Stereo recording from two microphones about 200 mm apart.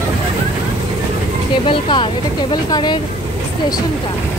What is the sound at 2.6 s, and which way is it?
Vehicle, 20° left (ahead or behind).